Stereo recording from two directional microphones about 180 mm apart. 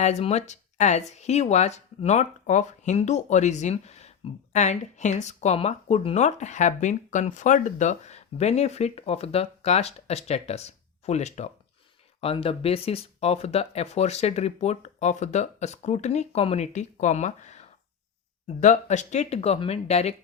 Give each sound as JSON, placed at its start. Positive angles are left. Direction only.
{"t": 0.0, "sound": "speech", "side_deg": 40}